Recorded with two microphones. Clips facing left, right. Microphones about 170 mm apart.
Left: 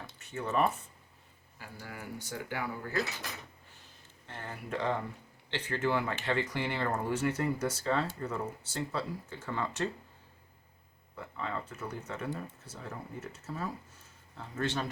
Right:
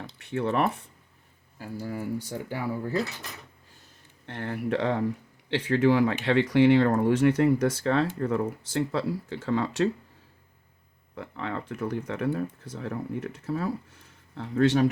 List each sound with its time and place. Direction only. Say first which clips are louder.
0.1 s speech: right 7 dB; 65° right (ahead or behind)
1.5 s speech: right 11 dB; 35° right (ahead or behind)
4.3 s speech: right 10 dB; 70° right (ahead or behind)
8.9 s speech: right 8 dB; 85° right
11.2 s speech: right 5 dB; 75° right (ahead or behind)